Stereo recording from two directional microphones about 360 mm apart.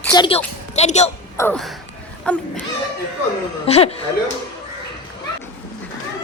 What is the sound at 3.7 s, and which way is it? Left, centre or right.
Speech, centre.